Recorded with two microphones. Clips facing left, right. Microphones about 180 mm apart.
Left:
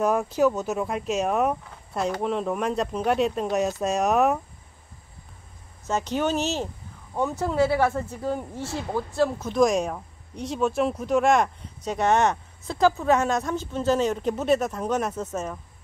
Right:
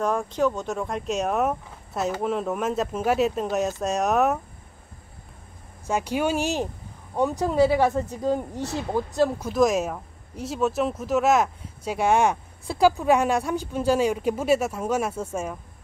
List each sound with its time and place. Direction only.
0.0 s speech: 10° left (ahead or behind)
5.9 s speech: 10° right (ahead or behind)
9.5 s speech: 5° right (ahead or behind)